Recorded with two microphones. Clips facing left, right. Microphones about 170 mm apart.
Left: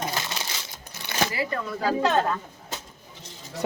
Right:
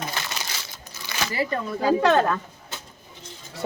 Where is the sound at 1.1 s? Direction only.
60° left (ahead or behind).